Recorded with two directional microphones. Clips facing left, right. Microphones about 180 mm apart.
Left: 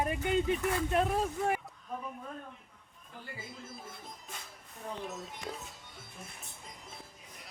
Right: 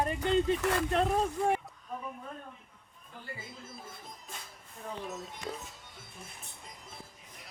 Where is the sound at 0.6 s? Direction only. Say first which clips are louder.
Right 2 dB; 85° right.